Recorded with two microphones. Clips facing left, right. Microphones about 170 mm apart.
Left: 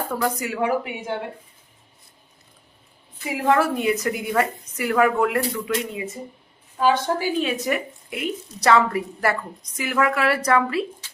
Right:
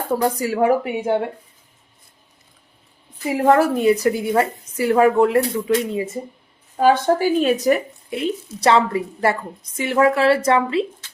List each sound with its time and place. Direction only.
0.1 s a woman's voice: 30° right (ahead or behind)
3.2 s a woman's voice: 40° right (ahead or behind)
6.7 s speech: 45° right (ahead or behind); by 10.8 s 25° right (ahead or behind)